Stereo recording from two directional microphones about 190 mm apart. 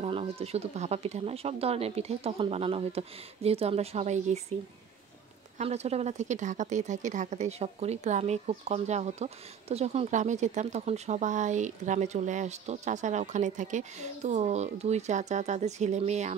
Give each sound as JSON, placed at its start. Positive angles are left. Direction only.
{"t": 0.0, "sound": "a woman's voice", "side_deg": -30}
{"t": 5.6, "sound": "a woman's voice", "side_deg": -35}